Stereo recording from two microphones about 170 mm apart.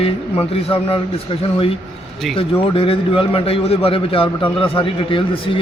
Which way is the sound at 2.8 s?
30° left (ahead or behind).